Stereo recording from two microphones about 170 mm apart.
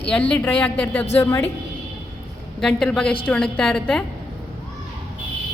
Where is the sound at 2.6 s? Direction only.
5° left (ahead or behind).